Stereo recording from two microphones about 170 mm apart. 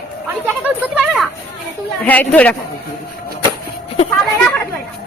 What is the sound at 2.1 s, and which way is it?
Speech, 10° left (ahead or behind).